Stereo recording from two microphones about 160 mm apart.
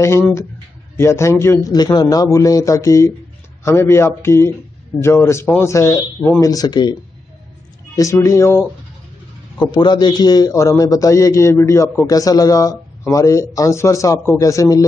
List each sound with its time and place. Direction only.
0.0 s a man's voice: 15° left (ahead or behind)
9.6 s a man's voice: 25° left (ahead or behind)